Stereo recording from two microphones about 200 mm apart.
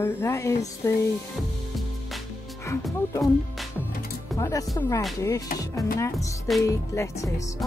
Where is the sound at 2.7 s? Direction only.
15° left (ahead or behind).